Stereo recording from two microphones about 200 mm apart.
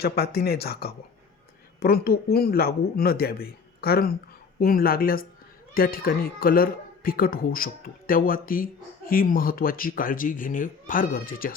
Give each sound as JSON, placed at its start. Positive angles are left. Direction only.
{"t": 0.0, "sound": "speech", "side_deg": 50}